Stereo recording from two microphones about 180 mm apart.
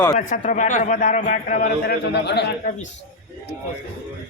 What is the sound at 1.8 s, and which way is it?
Speech, 65° left (ahead or behind).